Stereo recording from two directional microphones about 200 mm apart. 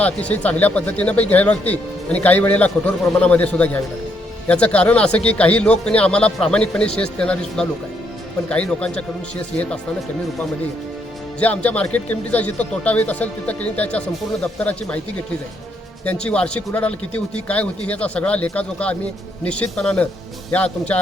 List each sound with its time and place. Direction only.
0.0 s a man's voice: 5° left (ahead or behind)
11.3 s speech: 5° left (ahead or behind)
16.0 s a man's voice: 5° left (ahead or behind)